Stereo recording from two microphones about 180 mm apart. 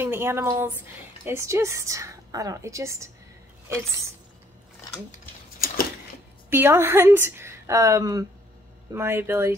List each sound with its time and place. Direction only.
0.0 s a woman's voice: 15° right (ahead or behind)
6.5 s a woman's voice: 10° right (ahead or behind)